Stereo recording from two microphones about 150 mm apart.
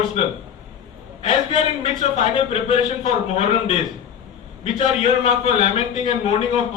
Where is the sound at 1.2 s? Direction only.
45° left (ahead or behind).